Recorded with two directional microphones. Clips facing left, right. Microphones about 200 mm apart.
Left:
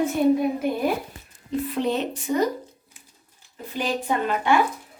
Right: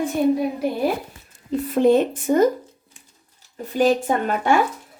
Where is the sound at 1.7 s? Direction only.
50° right (ahead or behind).